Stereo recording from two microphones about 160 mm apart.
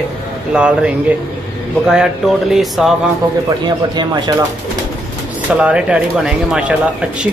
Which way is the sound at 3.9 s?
25° right (ahead or behind).